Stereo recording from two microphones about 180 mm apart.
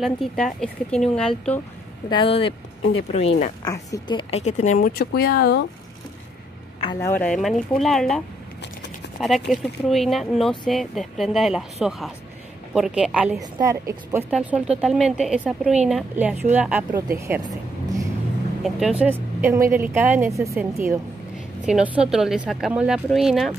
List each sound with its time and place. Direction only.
0.0 s a woman's voice: centre (ahead or behind)
2.0 s speech: 30° left (ahead or behind)
3.6 s speech: 20° left (ahead or behind); by 5.7 s 65° left (ahead or behind)
6.8 s speech: 20° left (ahead or behind)
7.2 s a woman's voice: 5° left (ahead or behind)
9.5 s a woman's voice: centre (ahead or behind)
13.4 s a woman's voice: 20° right (ahead or behind)
14.3 s a woman's voice: 5° right (ahead or behind)
18.6 s a woman's voice: 5° right (ahead or behind)